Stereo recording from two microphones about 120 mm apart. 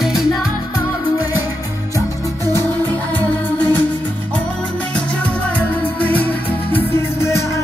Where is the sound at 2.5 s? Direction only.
15° left (ahead or behind).